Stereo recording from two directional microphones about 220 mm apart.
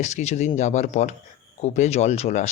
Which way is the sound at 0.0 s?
30° left (ahead or behind).